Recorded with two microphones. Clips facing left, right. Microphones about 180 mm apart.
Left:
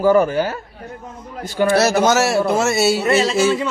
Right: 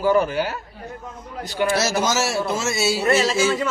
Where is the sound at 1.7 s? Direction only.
60° left (ahead or behind).